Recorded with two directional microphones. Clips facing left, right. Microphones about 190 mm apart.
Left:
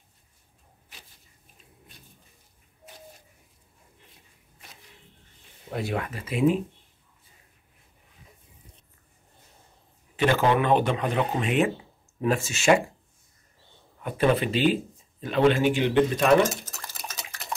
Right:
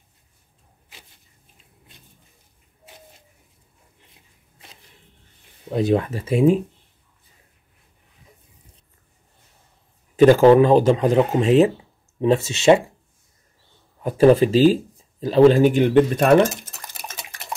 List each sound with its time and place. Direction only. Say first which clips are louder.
5.7 s speech: right 10 dB; 20° right (ahead or behind)
10.1 s speech: right 11 dB; 40° right (ahead or behind); by 12.8 s 25° right (ahead or behind)
14.0 s speech: right 9 dB; 35° right (ahead or behind); by 16.7 s 55° right (ahead or behind)